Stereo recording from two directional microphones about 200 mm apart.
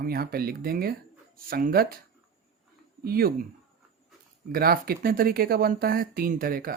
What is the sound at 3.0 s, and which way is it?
Speech, 50° right (ahead or behind).